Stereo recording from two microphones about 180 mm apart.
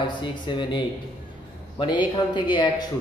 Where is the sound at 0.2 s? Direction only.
25° left (ahead or behind).